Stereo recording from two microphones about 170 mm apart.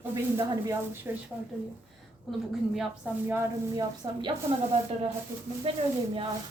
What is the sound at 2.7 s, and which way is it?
A woman's voice, 10° right (ahead or behind).